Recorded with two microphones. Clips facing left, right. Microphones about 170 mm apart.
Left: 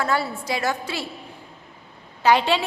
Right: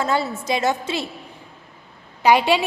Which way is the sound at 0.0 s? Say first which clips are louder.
Right 2 dB; 20° right (ahead or behind).